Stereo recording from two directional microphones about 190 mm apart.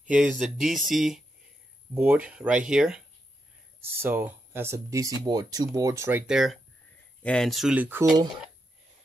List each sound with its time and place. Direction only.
0.2 s speech: centre (ahead or behind)
4.0 s speech: 10° right (ahead or behind)
6.2 s speech: centre (ahead or behind)